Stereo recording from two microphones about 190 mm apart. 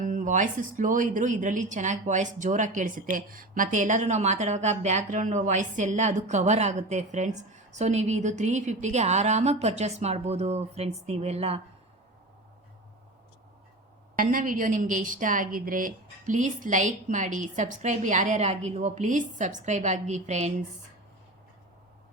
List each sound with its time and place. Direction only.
0.0 s a woman's voice: 40° right (ahead or behind)
14.2 s a woman's voice: 45° right (ahead or behind)